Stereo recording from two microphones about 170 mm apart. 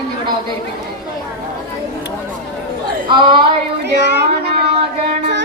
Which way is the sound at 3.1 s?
30° right (ahead or behind).